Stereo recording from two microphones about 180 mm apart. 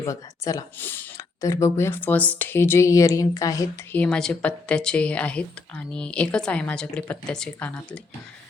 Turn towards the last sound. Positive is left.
turn(degrees=5)  # may be behind; listen again after turning